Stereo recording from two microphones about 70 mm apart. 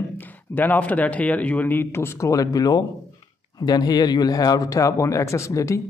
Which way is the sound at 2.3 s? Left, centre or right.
Left.